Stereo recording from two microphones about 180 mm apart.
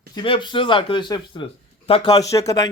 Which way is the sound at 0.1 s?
25° left (ahead or behind).